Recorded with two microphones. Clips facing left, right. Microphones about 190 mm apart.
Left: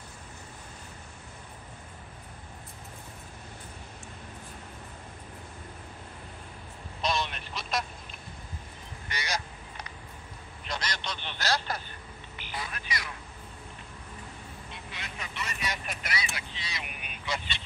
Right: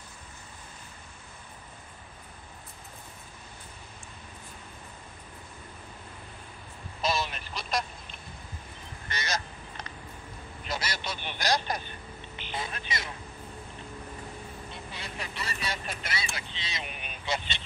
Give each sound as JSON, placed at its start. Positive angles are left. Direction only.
{"t": 7.0, "sound": "telephone", "side_deg": -5}
{"t": 9.1, "sound": "honk", "side_deg": 15}
{"t": 10.6, "sound": "vehicle", "side_deg": -5}
{"t": 14.7, "sound": "vehicle", "side_deg": -35}